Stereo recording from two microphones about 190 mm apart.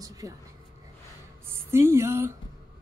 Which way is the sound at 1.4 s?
15° right (ahead or behind).